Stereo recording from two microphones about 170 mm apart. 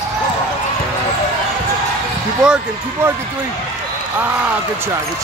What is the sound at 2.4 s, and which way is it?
Speech, 5° right (ahead or behind).